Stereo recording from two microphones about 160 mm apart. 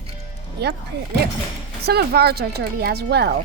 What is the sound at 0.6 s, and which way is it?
Speech, 90° right.